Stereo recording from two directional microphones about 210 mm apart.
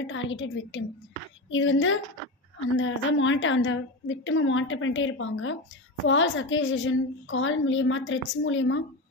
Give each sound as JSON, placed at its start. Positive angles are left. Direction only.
{"t": 0.0, "sound": "a woman's voice", "side_deg": 65}